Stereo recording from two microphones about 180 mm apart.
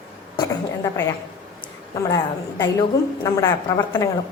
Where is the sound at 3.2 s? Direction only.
20° left (ahead or behind).